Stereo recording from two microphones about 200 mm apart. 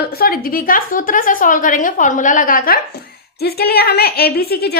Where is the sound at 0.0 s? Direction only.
50° left (ahead or behind).